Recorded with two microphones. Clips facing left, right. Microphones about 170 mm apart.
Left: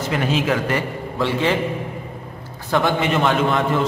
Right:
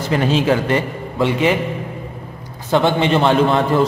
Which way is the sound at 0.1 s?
30° right (ahead or behind).